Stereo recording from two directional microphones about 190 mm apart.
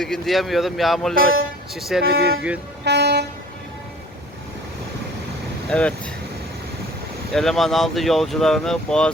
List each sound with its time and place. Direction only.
0.0 s speech: centre (ahead or behind)
1.1 s speech: 90° right
1.7 s speech: centre (ahead or behind)
2.0 s speech: 55° right (ahead or behind)
5.6 s speech: 5° left (ahead or behind)
7.3 s speech: centre (ahead or behind)